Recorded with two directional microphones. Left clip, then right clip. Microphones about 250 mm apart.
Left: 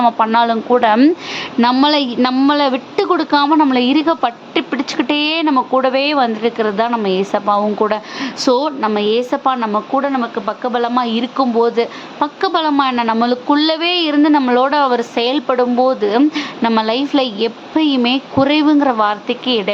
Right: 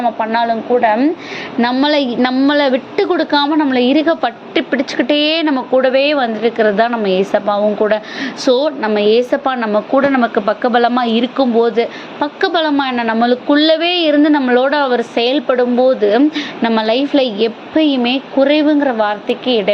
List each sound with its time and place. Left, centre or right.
0.0 s a woman's voice: centre